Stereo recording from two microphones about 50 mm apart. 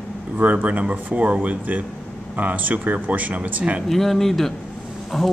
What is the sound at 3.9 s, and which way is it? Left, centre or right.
Speech, centre.